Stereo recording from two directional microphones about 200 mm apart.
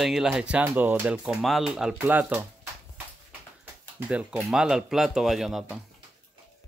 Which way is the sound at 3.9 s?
10° right (ahead or behind).